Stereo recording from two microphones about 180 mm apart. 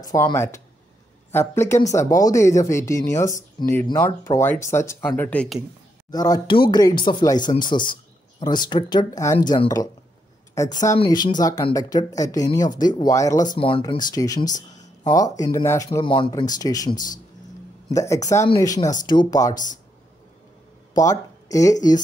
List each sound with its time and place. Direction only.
0.0 s speech: 20° left (ahead or behind)
6.1 s speech: 20° left (ahead or behind)
16.0 s speech: 25° left (ahead or behind)
16.9 s speech: 45° left (ahead or behind)
17.8 s speech: 15° left (ahead or behind)
18.8 s speech: 45° left (ahead or behind)
19.0 s speech: 20° left (ahead or behind)
19.5 s speech: 45° left (ahead or behind)
20.9 s speech: 20° left (ahead or behind)